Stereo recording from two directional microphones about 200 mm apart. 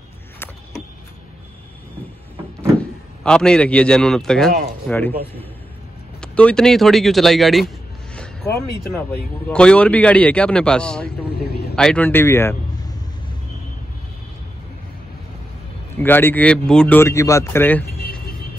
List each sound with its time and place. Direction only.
3.3 s speech: 5° left (ahead or behind)
6.2 s speech: 5° left (ahead or behind)
8.2 s zipper: 5° left (ahead or behind)
9.5 s speech: 5° left (ahead or behind)
16.0 s speech: 10° left (ahead or behind)